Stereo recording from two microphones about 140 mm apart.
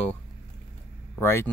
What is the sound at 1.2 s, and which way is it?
Speech, 15° left (ahead or behind).